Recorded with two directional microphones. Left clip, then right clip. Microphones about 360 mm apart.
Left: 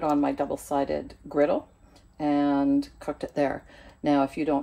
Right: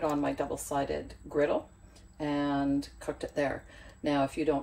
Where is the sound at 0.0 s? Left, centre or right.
Left.